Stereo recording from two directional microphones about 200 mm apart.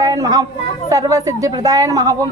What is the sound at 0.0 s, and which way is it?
A woman's voice, 15° right (ahead or behind).